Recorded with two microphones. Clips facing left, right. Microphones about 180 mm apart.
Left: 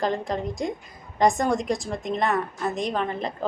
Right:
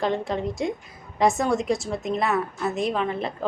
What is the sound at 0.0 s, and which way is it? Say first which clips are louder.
A woman's voice: right 1 dB; centre (ahead or behind).